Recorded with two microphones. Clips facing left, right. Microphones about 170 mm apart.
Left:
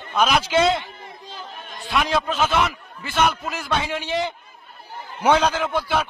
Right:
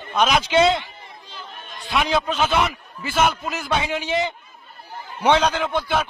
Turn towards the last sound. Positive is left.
turn(degrees=0)  # may be behind; listen again after turning